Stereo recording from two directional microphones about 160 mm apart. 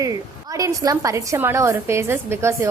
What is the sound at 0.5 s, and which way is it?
A woman's voice, 20° right (ahead or behind).